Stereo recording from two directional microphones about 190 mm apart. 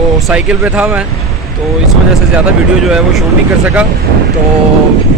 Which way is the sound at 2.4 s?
5° right (ahead or behind).